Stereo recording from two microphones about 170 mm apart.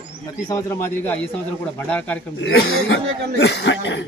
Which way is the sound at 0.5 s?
15° left (ahead or behind).